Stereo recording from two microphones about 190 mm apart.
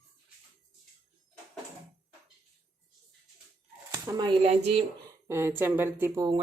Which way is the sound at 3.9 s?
20° right (ahead or behind).